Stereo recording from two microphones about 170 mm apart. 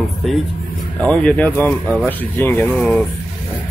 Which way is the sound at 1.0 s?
5° left (ahead or behind).